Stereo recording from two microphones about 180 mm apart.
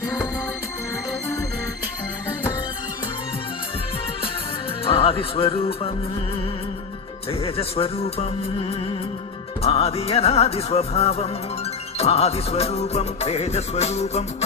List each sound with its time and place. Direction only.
4.9 s music: 30° left (ahead or behind)
7.3 s music: 35° left (ahead or behind)